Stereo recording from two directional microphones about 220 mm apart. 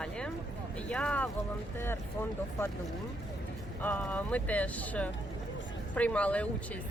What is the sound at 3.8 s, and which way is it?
Speech, 5° left (ahead or behind).